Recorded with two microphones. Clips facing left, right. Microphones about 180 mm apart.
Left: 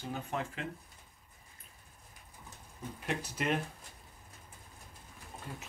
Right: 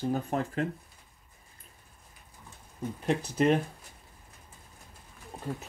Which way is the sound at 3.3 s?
35° right (ahead or behind).